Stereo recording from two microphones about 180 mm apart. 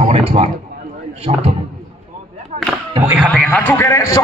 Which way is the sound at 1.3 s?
40° right (ahead or behind).